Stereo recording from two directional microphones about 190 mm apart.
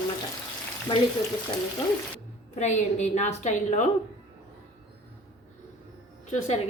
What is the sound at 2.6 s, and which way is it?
Speech, 35° left (ahead or behind).